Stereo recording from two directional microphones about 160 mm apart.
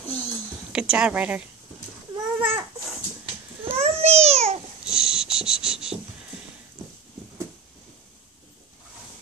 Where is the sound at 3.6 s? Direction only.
40° right (ahead or behind).